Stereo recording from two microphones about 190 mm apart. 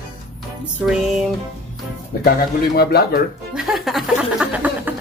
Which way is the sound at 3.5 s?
Centre (ahead or behind).